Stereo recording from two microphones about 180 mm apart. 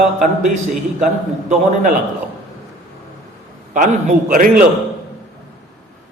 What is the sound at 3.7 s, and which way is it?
Speech, 45° right (ahead or behind).